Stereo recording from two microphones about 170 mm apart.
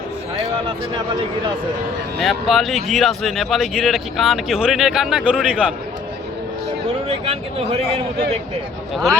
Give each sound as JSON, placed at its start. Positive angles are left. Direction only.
{"t": 2.1, "sound": "speech", "side_deg": 0}
{"t": 7.1, "sound": "speech", "side_deg": -35}